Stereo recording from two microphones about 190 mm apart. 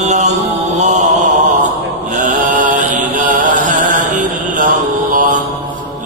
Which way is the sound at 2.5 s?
45° right (ahead or behind).